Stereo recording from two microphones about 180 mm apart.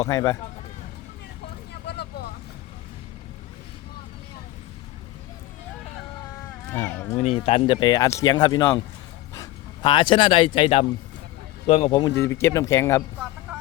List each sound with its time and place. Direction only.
0.1 s speech: 20° left (ahead or behind)
1.7 s vehicle: 65° left (ahead or behind)
6.8 s speech: 15° left (ahead or behind)
7.4 s speech: 30° left (ahead or behind)
9.8 s speech: 30° left (ahead or behind)
11.9 s speech: 20° left (ahead or behind)